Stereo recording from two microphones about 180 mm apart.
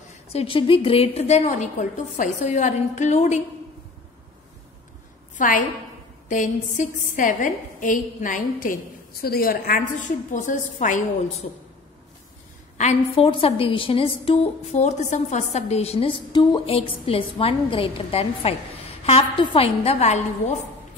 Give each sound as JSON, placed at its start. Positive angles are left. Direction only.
{"t": 0.3, "sound": "a woman's voice", "side_deg": 30}
{"t": 5.4, "sound": "a woman's voice", "side_deg": 45}
{"t": 12.7, "sound": "a woman's voice", "side_deg": 35}